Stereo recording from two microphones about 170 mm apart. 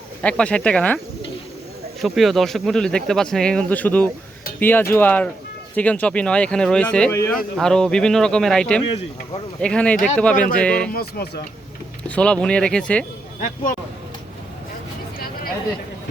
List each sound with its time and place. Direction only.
0.2 s speech: 5° left (ahead or behind)
7.1 s speech: 15° left (ahead or behind)
7.5 s speech: 5° left (ahead or behind)
10.9 s speech: 65° left (ahead or behind)
12.0 s speech: 5° left (ahead or behind)